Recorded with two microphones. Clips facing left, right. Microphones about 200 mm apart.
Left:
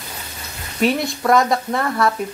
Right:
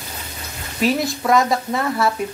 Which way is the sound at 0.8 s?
Centre (ahead or behind).